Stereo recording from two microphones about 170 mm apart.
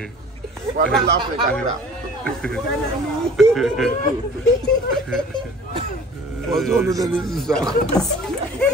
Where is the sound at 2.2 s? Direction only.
5° left (ahead or behind).